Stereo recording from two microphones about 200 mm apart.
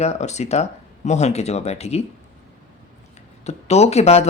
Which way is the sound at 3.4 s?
30° left (ahead or behind).